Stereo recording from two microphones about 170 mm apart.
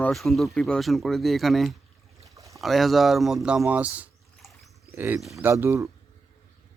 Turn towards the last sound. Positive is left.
turn(degrees=-15)  # may be behind; listen again after turning